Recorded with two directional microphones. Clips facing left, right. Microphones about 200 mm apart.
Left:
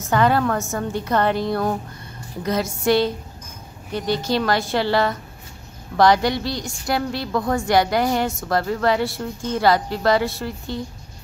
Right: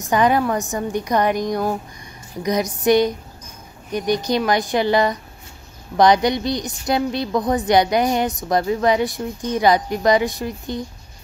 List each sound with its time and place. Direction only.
0.0 s a woman's voice: 15° right (ahead or behind)